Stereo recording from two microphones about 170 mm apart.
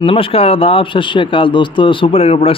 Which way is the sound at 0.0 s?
30° left (ahead or behind).